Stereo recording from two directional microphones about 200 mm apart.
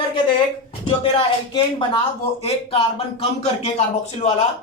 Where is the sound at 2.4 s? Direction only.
30° left (ahead or behind).